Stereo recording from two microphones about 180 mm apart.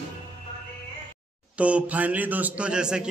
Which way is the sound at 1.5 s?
5° right (ahead or behind).